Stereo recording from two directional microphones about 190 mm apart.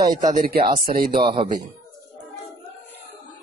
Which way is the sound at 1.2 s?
25° right (ahead or behind).